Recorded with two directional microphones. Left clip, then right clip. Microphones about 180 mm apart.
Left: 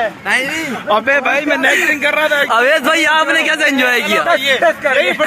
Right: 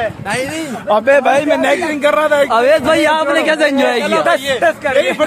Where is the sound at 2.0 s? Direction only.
90° right.